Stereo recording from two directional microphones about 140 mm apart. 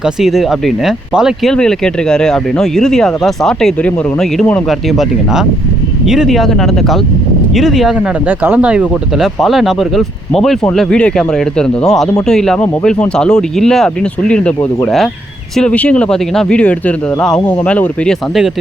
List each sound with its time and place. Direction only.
0.0 s speech: centre (ahead or behind)